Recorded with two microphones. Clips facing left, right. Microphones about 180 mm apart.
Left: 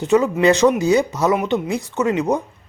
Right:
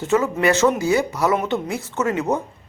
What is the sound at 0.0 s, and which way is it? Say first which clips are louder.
Speech: left 4 dB; 15° left (ahead or behind).